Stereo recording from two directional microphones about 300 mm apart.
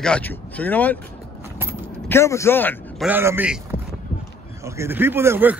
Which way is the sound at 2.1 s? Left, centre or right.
Centre.